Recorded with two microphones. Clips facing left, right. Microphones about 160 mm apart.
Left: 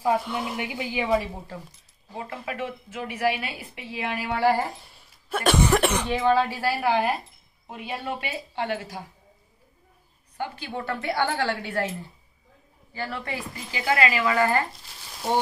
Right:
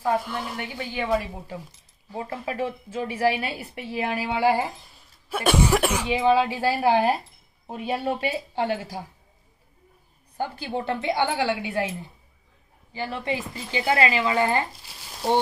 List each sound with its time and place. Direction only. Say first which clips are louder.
0.0 s a woman's voice: left 1 dB; 5° left (ahead or behind)
2.1 s a woman's voice: right 3 dB; 30° right (ahead or behind)
4.3 s speech: even; 15° right (ahead or behind)
4.8 s a woman's voice: even; centre (ahead or behind); by 9.0 s 30° right (ahead or behind)
10.3 s a woman's voice: right 3 dB; 35° right (ahead or behind)
10.8 s speech: right 2 dB; 20° right (ahead or behind)